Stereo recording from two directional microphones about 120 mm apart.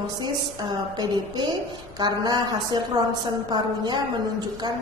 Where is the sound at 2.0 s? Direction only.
35° right (ahead or behind).